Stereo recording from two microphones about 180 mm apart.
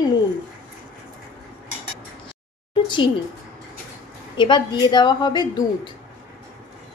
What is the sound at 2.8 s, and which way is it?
Speech, 25° left (ahead or behind).